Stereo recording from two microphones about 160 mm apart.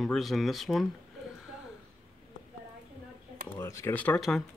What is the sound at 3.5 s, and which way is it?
Speech, 20° left (ahead or behind).